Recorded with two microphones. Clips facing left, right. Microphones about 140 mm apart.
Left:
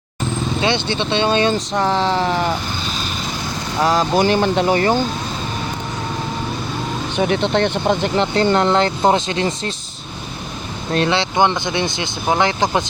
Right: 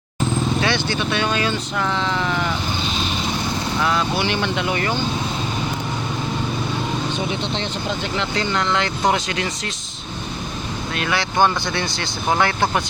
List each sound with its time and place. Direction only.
0.6 s speech: 25° left (ahead or behind)
3.8 s speech: 35° left (ahead or behind)
7.2 s speech: 60° left (ahead or behind)
8.1 s speech: 40° left (ahead or behind)
10.9 s speech: 30° left (ahead or behind)